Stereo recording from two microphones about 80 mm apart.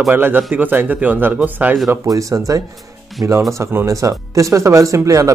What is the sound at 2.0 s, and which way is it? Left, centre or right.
A man's voice, right.